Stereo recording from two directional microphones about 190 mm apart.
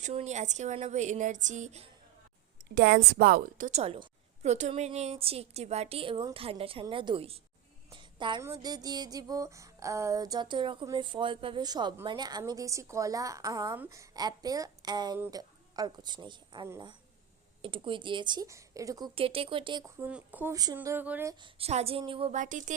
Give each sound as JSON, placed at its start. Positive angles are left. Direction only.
{"t": 0.0, "sound": "a woman's voice", "side_deg": -35}
{"t": 2.7, "sound": "a woman's voice", "side_deg": -60}
{"t": 3.7, "sound": "a woman's voice", "side_deg": -35}
{"t": 7.9, "sound": "a sound", "side_deg": -25}
{"t": 8.4, "sound": "music", "side_deg": -20}
{"t": 12.0, "sound": "a woman's voice", "side_deg": -20}
{"t": 13.7, "sound": "music", "side_deg": -15}
{"t": 15.2, "sound": "a woman's voice", "side_deg": -20}
{"t": 17.6, "sound": "music", "side_deg": -25}
{"t": 20.0, "sound": "a woman's voice", "side_deg": -10}
{"t": 21.4, "sound": "a woman's voice", "side_deg": -35}
{"t": 22.4, "sound": "a woman's voice", "side_deg": -40}